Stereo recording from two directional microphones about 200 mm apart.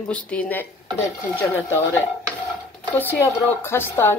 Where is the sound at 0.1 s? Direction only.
5° left (ahead or behind).